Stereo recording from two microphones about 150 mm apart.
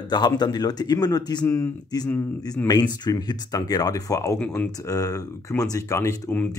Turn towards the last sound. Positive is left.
turn(degrees=15)  # may be behind; listen again after turning